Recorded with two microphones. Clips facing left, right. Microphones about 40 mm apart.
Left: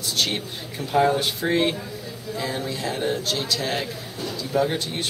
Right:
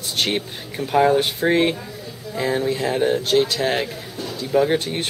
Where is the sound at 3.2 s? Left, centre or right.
Right.